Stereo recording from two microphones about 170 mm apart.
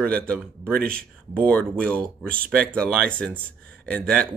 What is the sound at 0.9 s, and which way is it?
Speech, 5° left (ahead or behind).